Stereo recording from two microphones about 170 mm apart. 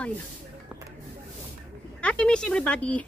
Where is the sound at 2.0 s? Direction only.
5° left (ahead or behind).